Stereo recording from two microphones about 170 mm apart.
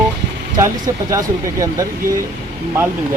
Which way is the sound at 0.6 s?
20° right (ahead or behind).